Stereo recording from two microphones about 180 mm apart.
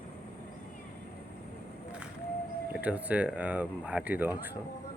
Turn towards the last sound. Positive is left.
turn(degrees=-10)  # may be behind; listen again after turning